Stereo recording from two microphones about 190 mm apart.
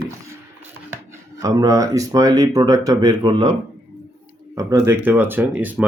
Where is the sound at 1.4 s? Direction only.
20° right (ahead or behind).